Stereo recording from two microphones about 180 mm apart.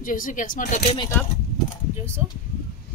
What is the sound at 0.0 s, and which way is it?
Speech, 50° left (ahead or behind).